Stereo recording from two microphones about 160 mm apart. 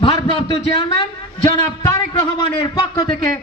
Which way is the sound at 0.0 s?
35° left (ahead or behind).